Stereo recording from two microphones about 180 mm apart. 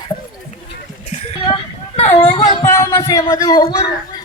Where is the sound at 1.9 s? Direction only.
35° left (ahead or behind).